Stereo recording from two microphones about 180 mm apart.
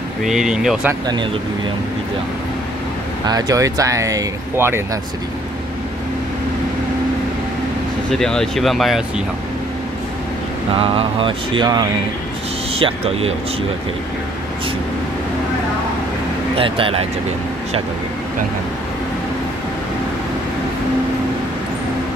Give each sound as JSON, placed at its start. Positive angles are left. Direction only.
{"t": 0.2, "sound": "speech", "side_deg": 0}
{"t": 3.3, "sound": "speech", "side_deg": -20}
{"t": 8.1, "sound": "speech", "side_deg": 5}
{"t": 10.8, "sound": "speech", "side_deg": -30}
{"t": 16.5, "sound": "speech", "side_deg": -30}